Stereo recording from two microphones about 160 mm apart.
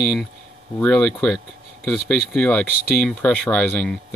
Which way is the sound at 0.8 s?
5° left (ahead or behind).